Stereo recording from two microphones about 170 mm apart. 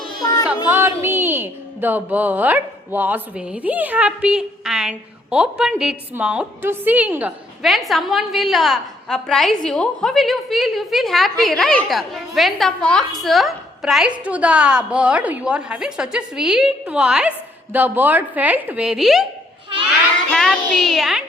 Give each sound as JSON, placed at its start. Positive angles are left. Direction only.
{"t": 0.0, "sound": "a sound", "side_deg": 25}
{"t": 0.7, "sound": "a woman's voice", "side_deg": -15}
{"t": 20.3, "sound": "a woman's voice", "side_deg": 5}